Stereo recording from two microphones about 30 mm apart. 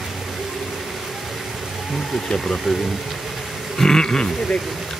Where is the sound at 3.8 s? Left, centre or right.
Left.